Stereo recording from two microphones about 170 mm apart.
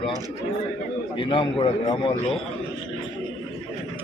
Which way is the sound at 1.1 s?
30° left (ahead or behind).